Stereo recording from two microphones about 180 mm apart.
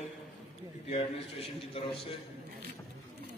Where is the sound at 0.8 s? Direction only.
30° left (ahead or behind).